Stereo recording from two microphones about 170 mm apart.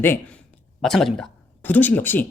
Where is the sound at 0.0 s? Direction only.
10° left (ahead or behind).